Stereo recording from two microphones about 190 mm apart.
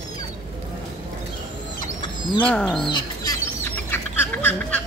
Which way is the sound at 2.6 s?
Centre (ahead or behind).